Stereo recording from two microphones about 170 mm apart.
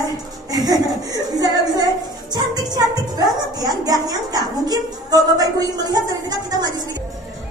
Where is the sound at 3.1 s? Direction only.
25° right (ahead or behind).